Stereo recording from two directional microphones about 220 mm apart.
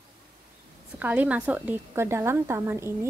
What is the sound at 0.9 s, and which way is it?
A woman's voice, 10° right (ahead or behind).